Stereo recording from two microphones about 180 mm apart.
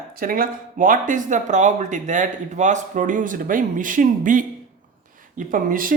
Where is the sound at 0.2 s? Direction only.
50° right (ahead or behind).